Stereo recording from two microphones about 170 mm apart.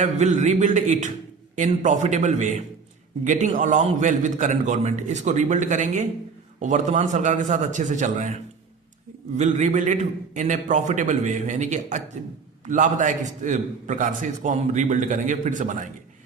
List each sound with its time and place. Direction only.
0.0 s a man's voice: 45° right (ahead or behind)
9.4 s a man's voice: 45° right (ahead or behind)